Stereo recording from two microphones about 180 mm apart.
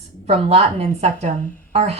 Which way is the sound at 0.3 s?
35° right (ahead or behind).